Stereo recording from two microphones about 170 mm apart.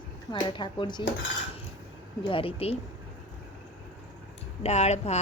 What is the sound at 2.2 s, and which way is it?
Speech, 30° left (ahead or behind).